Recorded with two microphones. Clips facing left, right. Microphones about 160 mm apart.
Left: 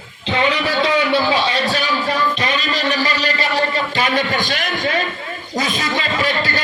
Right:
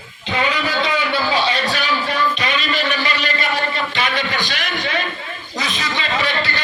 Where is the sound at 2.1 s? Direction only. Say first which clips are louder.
Left 1 dB; 40° left (ahead or behind).